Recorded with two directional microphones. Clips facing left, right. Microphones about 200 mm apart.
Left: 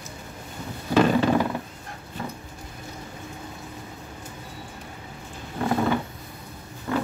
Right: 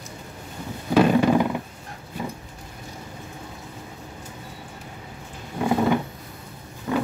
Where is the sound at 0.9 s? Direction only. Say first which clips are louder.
Right 2 dB; 10° right (ahead or behind).